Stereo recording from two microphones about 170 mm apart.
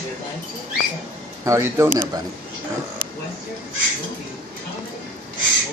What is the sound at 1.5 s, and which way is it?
Speech, 15° right (ahead or behind).